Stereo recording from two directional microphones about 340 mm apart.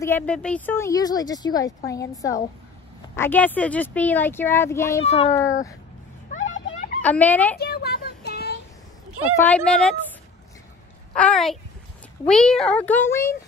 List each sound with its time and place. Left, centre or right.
0.0 s a woman's voice: centre
7.0 s speech: centre
7.5 s child singing: left
9.4 s speech: centre
11.1 s speech: centre